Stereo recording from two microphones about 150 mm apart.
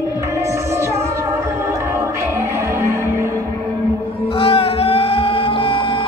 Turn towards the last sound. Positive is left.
turn(degrees=35)  # may be behind; listen again after turning